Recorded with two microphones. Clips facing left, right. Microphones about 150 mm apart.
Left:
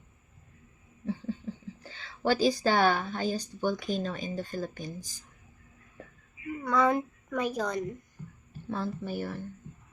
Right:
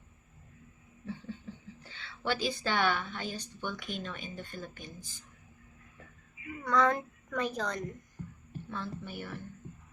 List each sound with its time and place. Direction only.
1.5 s a sound: 35° left (ahead or behind)
1.8 s a woman's voice: 35° left (ahead or behind)
6.7 s a woman's voice: 10° left (ahead or behind)
8.7 s a woman's voice: 35° left (ahead or behind)